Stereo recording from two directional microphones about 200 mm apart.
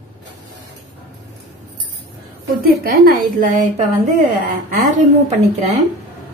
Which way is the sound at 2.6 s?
45° right (ahead or behind).